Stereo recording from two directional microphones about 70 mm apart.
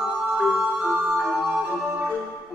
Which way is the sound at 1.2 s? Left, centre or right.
Centre.